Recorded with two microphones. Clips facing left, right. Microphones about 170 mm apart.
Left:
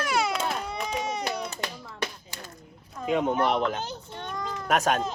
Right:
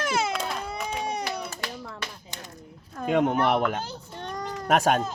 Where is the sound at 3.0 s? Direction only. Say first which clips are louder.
Right 2 dB; 60° right (ahead or behind).